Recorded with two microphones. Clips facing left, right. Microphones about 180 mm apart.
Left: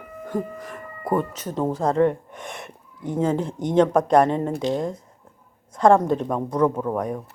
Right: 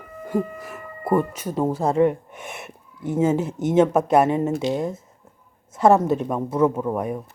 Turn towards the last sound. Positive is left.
turn(degrees=-5)  # may be behind; listen again after turning